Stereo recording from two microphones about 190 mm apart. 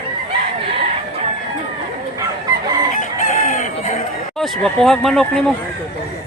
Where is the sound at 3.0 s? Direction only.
45° left (ahead or behind).